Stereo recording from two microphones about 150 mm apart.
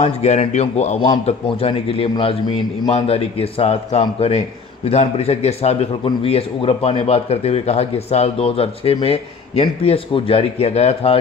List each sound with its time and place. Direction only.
0.0 s speech: 45° left (ahead or behind)